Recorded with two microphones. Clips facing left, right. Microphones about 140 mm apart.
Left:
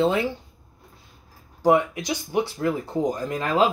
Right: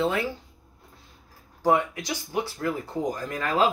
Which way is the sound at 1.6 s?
20° left (ahead or behind).